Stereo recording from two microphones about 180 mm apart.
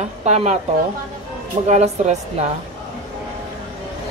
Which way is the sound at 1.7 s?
40° right (ahead or behind).